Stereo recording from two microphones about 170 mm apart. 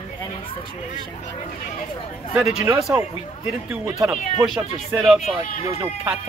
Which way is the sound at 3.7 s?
5° right (ahead or behind).